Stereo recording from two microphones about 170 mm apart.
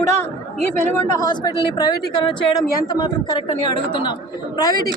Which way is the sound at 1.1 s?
25° left (ahead or behind).